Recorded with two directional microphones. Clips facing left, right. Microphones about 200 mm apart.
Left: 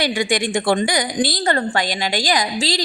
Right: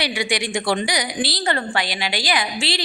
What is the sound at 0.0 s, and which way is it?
A woman's voice, 50° left (ahead or behind).